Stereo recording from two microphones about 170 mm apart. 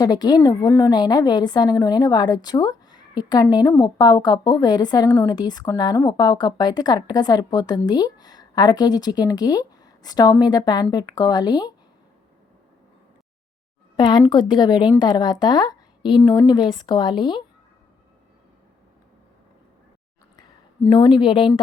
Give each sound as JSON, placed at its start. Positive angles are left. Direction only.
{"t": 0.0, "sound": "a woman's voice", "side_deg": 25}
{"t": 13.9, "sound": "a woman's voice", "side_deg": 25}
{"t": 20.8, "sound": "a woman's voice", "side_deg": 25}